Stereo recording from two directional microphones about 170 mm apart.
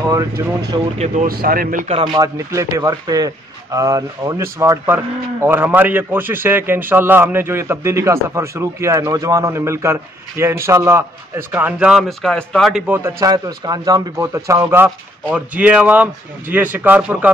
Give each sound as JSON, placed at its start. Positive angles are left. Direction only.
{"t": 0.0, "sound": "speech", "side_deg": -20}
{"t": 0.7, "sound": "speech", "side_deg": -40}
{"t": 1.2, "sound": "speech", "side_deg": -60}
{"t": 2.0, "sound": "speech", "side_deg": -20}
{"t": 13.3, "sound": "speech", "side_deg": -25}